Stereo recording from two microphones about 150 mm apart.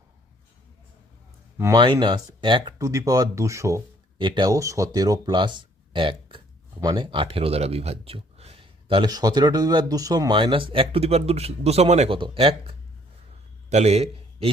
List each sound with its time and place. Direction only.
1.5 s speech: 20° right (ahead or behind)
1.8 s speech: 30° right (ahead or behind)
2.7 s speech: 20° right (ahead or behind)
4.2 s speech: 30° right (ahead or behind); by 12.1 s 45° right (ahead or behind)
12.1 s a man's voice: 35° right (ahead or behind)